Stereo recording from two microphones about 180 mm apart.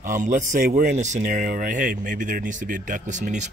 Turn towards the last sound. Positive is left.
turn(degrees=-40)  # may be behind; listen again after turning